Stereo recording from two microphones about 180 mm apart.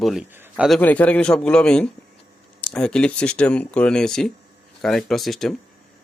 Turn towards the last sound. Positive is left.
turn(degrees=0)  # may be behind; listen again after turning